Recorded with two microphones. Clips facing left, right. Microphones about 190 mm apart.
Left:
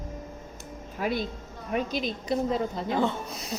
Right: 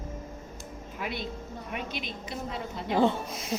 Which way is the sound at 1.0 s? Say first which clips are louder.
Left 6 dB; 40° left (ahead or behind).